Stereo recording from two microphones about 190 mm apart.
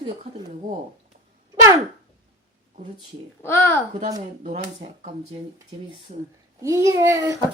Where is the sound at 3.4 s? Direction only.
15° left (ahead or behind).